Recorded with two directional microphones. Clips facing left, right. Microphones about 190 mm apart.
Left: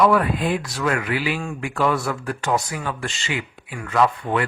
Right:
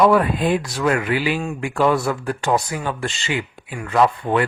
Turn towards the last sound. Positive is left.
turn(degrees=-30)  # may be behind; listen again after turning